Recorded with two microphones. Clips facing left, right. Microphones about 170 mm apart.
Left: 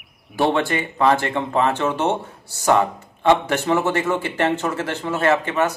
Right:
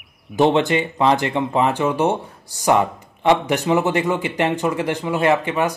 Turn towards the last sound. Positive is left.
turn(degrees=-15)  # may be behind; listen again after turning